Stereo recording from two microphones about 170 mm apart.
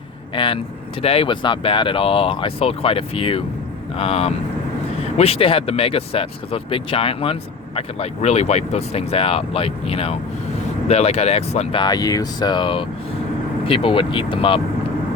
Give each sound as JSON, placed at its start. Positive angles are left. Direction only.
{"t": 0.3, "sound": "speech", "side_deg": 30}